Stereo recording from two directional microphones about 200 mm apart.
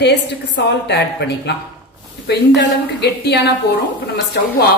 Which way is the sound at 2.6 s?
55° left (ahead or behind).